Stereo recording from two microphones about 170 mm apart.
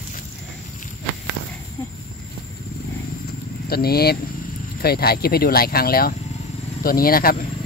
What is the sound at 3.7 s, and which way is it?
Speech, 65° left (ahead or behind).